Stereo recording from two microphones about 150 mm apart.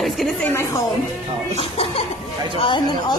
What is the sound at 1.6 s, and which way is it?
Speech, 40° left (ahead or behind).